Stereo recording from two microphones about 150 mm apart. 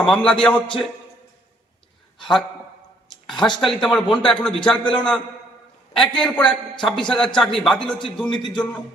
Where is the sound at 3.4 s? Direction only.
Centre (ahead or behind).